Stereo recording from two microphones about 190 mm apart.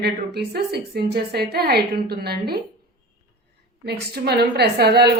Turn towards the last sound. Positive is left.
turn(degrees=-60)  # may be behind; listen again after turning